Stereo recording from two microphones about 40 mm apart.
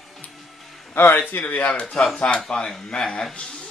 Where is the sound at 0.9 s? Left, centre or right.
Left.